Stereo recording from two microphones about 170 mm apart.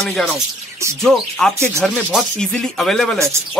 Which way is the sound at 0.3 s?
15° right (ahead or behind).